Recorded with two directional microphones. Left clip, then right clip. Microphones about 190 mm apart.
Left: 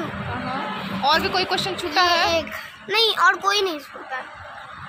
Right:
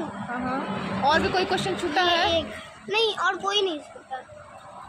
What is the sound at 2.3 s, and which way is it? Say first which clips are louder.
A child's voice: left 3 dB; 5° left (ahead or behind).